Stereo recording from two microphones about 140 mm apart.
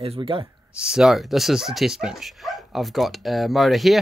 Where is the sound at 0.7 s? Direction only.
5° right (ahead or behind).